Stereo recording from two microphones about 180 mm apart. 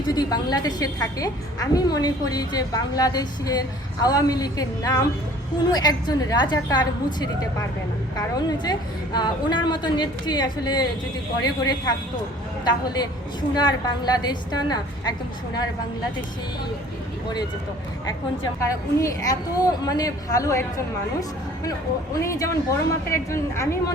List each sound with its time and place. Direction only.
0.1 s a woman's voice: 20° left (ahead or behind)
18.6 s a woman's voice: 15° left (ahead or behind)